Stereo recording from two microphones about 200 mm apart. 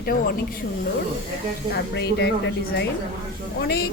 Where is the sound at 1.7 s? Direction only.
60° left (ahead or behind).